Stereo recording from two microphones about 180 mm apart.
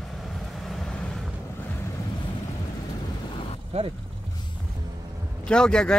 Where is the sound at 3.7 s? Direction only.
35° right (ahead or behind).